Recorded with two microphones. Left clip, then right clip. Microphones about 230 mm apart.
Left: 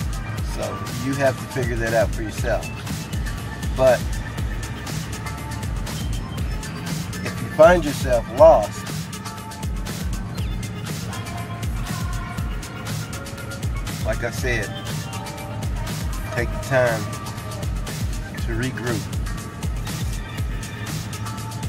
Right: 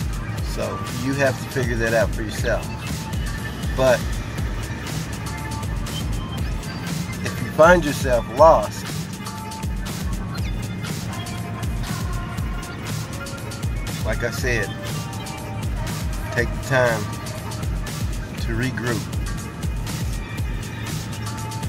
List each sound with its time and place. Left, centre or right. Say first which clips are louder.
0.9 s speech: even; centre
7.5 s speech: even; centre
14.2 s speech: right 3 dB; centre
16.3 s speech: even; centre
18.6 s speech: right 1 dB; centre